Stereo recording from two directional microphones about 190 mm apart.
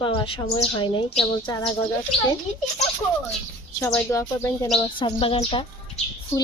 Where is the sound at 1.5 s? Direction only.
10° left (ahead or behind).